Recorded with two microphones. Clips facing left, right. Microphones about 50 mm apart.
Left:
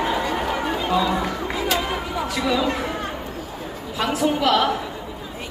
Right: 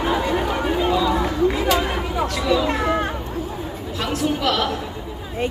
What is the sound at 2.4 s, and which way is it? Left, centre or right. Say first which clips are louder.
Speech: right 1 dB; centre.